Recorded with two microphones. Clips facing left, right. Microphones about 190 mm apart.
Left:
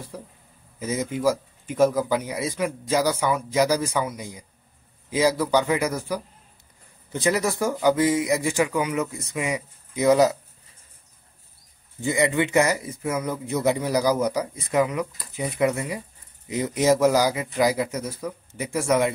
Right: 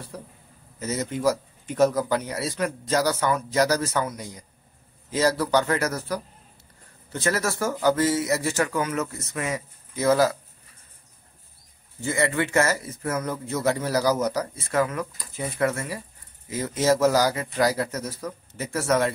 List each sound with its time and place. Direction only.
0.1 s a man's voice: 5° left (ahead or behind)
12.0 s speech: 15° left (ahead or behind)